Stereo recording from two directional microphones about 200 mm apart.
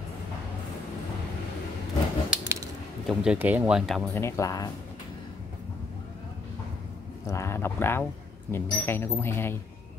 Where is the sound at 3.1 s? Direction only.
5° right (ahead or behind); by 4.6 s 15° left (ahead or behind).